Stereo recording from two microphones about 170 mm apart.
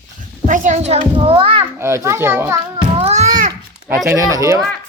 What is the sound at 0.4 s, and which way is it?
A child's voice, 45° right (ahead or behind).